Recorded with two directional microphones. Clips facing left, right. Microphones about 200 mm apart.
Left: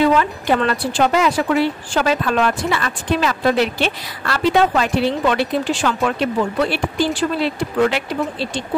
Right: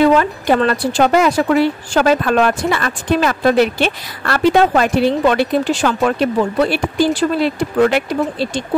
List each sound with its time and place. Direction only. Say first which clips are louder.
0.0 s speech: right 3 dB; 45° right (ahead or behind)